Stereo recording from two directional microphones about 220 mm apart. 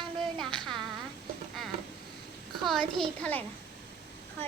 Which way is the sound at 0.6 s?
Centre (ahead or behind).